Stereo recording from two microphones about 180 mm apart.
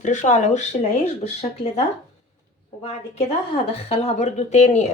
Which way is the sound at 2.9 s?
35° left (ahead or behind).